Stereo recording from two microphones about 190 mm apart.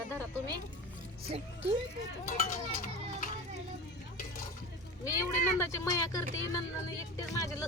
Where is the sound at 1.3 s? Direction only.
30° right (ahead or behind).